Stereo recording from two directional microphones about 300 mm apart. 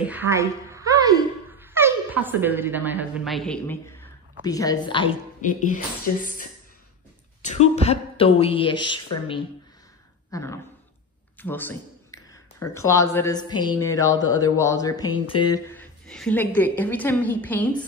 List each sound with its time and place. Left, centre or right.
0.0 s a woman's voice: centre